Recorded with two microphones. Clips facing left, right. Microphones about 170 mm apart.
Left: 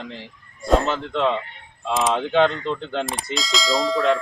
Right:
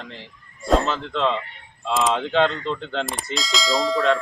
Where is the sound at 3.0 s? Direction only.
5° left (ahead or behind).